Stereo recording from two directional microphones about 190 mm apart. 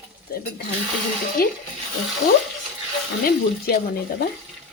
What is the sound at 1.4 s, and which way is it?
Speech, 50° left (ahead or behind).